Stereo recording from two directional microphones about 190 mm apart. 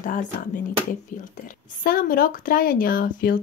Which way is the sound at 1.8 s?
50° left (ahead or behind).